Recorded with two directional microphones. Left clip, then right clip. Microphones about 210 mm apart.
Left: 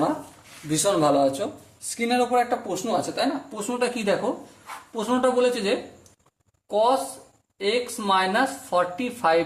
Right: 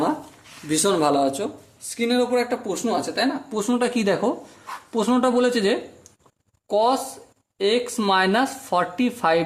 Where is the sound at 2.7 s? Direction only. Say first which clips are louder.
Right 1 dB; 30° right (ahead or behind).